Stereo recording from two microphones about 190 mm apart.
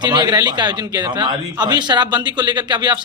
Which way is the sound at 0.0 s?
20° right (ahead or behind).